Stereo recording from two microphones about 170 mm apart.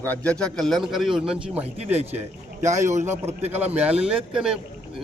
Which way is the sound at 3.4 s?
40° right (ahead or behind).